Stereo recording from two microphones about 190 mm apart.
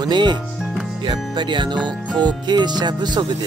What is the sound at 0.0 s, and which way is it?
Speech, 25° right (ahead or behind).